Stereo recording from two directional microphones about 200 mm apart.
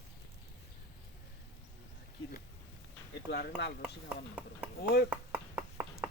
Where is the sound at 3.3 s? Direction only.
55° left (ahead or behind).